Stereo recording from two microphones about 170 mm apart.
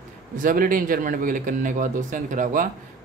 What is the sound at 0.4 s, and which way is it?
A man's voice, 55° right (ahead or behind).